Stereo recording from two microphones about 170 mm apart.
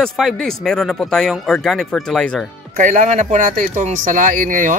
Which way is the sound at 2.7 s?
50° right (ahead or behind).